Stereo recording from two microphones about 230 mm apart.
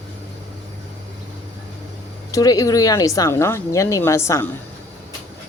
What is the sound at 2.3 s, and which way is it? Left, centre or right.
A woman's voice, centre.